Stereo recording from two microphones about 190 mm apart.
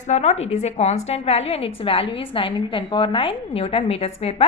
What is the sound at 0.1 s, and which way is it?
A woman's voice, 35° left (ahead or behind).